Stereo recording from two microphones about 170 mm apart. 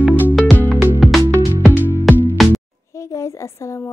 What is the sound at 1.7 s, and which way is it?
Music, 10° right (ahead or behind).